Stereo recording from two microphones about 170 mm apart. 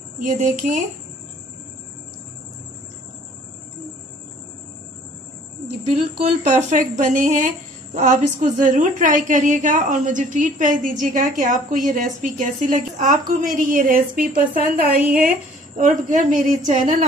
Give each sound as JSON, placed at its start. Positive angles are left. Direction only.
{"t": 0.2, "sound": "speech", "side_deg": -50}
{"t": 5.9, "sound": "a woman's voice", "side_deg": -35}